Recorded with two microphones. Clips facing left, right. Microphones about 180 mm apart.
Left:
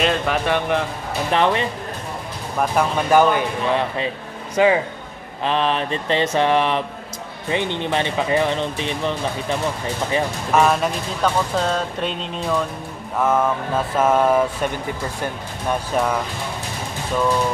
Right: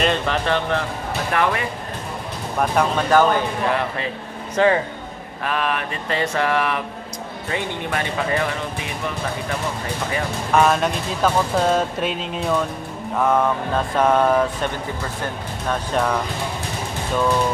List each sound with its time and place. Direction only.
0.0 s speech: centre (ahead or behind)
0.5 s speech: 15° left (ahead or behind)
1.3 s speech: 25° left (ahead or behind)
2.6 s speech: 5° left (ahead or behind)
3.2 s speech: 15° left (ahead or behind)
5.4 s speech: 25° left (ahead or behind)
10.5 s speech: centre (ahead or behind)
15.7 s speech: 5° left (ahead or behind)